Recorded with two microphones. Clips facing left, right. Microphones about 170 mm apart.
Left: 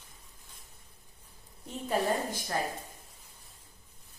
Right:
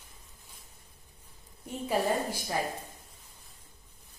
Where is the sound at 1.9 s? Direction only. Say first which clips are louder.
Right 1 dB; 10° right (ahead or behind).